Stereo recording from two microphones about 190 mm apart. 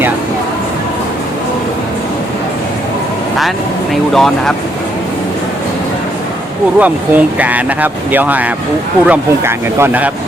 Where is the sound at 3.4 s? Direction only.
Centre (ahead or behind).